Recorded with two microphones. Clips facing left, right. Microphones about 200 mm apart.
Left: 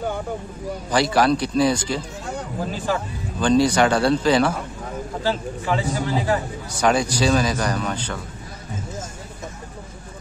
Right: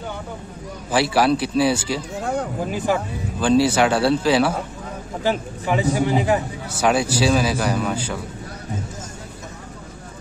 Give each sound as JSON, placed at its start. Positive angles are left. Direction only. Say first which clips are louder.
{"t": 0.9, "sound": "speech", "louder": "right 1 dB", "side_deg": -5}
{"t": 5.2, "sound": "a man's voice", "louder": "right 3 dB", "side_deg": -15}
{"t": 6.8, "sound": "speech", "louder": "right 1 dB", "side_deg": -5}